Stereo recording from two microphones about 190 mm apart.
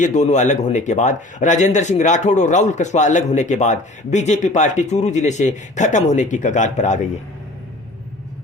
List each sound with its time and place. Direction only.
0.0 s speech: 40° left (ahead or behind)